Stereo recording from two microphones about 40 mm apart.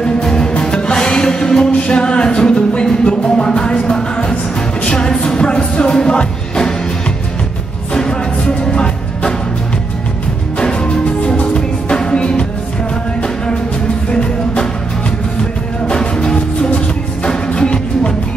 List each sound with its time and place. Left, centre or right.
0.0 s music: centre
7.9 s music: centre
10.6 s music: left
14.1 s music: left
16.7 s music: left